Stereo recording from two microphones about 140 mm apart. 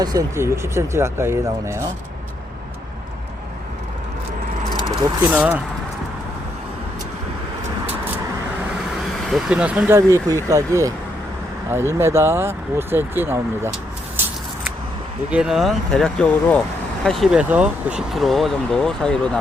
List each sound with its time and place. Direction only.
0.0 s speech: 25° right (ahead or behind)
5.3 s speech: 15° right (ahead or behind)
9.2 s speech: 5° right (ahead or behind); by 10.9 s 25° right (ahead or behind)
11.9 s speech: 20° right (ahead or behind)
15.3 s speech: 5° right (ahead or behind)